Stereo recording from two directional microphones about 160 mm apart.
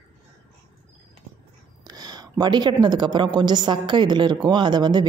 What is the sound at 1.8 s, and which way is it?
A woman's voice, 25° right (ahead or behind).